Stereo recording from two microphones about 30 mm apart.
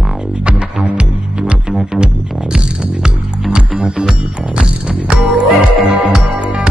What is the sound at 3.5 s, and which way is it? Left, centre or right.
Music, right.